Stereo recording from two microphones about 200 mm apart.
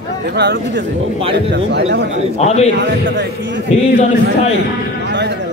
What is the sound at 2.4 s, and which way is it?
Speech, 30° left (ahead or behind).